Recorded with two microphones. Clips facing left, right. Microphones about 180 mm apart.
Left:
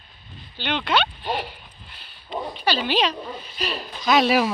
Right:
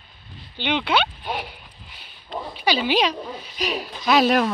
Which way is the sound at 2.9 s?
10° right (ahead or behind).